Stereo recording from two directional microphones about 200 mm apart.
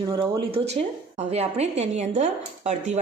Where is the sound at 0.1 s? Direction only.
25° right (ahead or behind).